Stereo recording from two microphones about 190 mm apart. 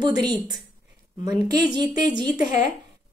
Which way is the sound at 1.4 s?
20° right (ahead or behind).